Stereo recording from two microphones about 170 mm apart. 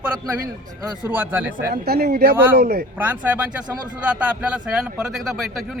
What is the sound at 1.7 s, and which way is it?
Speech, 65° right (ahead or behind).